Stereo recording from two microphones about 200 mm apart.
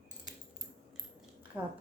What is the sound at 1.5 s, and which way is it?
Speech, 10° right (ahead or behind).